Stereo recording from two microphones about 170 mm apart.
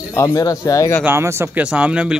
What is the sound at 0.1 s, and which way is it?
Speech, 20° left (ahead or behind).